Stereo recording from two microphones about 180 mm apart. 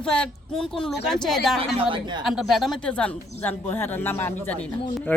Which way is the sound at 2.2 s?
Centre (ahead or behind).